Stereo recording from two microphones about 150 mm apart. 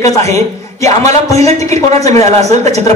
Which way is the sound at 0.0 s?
45° right (ahead or behind).